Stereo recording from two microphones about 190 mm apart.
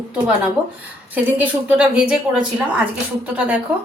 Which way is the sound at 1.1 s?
10° right (ahead or behind).